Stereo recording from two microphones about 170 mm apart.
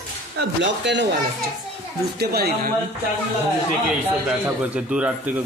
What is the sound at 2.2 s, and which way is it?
Speech, 65° right (ahead or behind).